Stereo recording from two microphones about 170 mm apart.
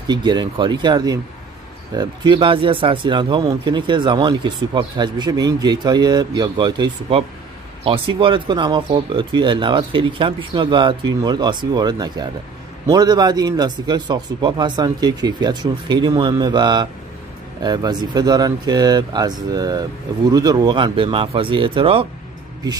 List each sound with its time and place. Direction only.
0.1 s speech: 25° right (ahead or behind)